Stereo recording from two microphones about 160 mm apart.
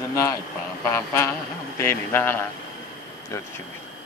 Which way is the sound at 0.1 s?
20° left (ahead or behind).